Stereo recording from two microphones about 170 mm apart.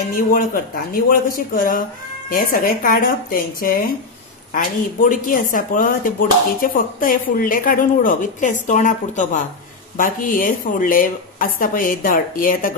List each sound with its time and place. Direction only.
0.1 s a woman's voice: 55° left (ahead or behind)